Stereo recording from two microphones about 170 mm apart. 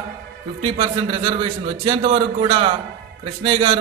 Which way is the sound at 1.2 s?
30° right (ahead or behind).